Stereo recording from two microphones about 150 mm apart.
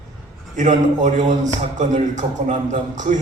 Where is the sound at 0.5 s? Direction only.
55° right (ahead or behind).